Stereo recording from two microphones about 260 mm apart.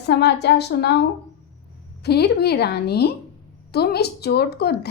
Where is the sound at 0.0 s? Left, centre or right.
Left.